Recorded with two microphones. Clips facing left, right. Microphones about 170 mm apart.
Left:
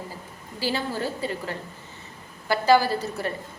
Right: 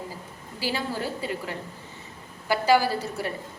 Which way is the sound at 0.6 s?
10° right (ahead or behind).